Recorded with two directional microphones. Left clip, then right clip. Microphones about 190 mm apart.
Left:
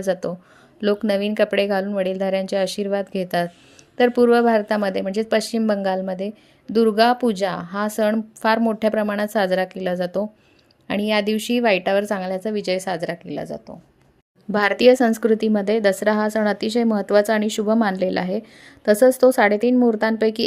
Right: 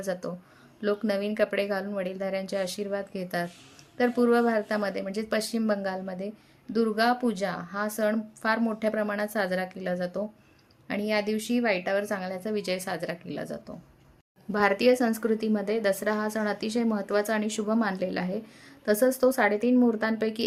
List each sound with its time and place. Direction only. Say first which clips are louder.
0.0 s a woman's voice: left 9 dB; 40° left (ahead or behind)
14.5 s a woman's voice: left 8 dB; 40° left (ahead or behind)